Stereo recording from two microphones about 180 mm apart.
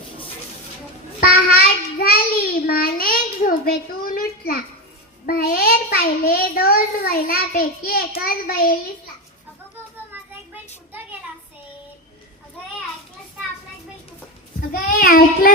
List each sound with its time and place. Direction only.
1.2 s child singing: 60° left (ahead or behind)
2.6 s a sound: 55° left (ahead or behind)
5.2 s a child's voice: 55° left (ahead or behind)
14.7 s a child's voice: 55° left (ahead or behind)